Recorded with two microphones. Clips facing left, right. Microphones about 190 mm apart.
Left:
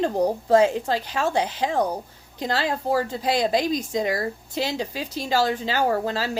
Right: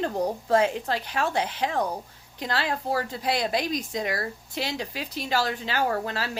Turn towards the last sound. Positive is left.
turn(degrees=30)  # may be behind; listen again after turning